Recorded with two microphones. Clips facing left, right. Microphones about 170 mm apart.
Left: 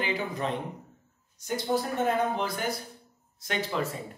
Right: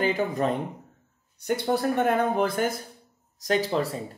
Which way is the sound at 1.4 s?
60° right (ahead or behind).